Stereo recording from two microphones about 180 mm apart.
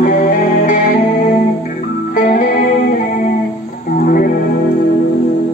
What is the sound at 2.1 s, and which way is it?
Music, 45° left (ahead or behind).